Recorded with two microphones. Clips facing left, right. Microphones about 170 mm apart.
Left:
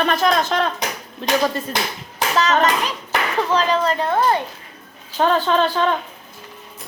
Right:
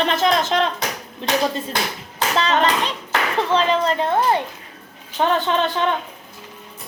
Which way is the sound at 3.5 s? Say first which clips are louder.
Even; 25° right (ahead or behind).